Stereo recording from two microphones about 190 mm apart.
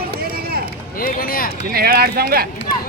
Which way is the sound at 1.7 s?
55° right (ahead or behind).